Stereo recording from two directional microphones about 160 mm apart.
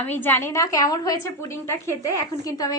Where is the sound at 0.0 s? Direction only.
10° left (ahead or behind).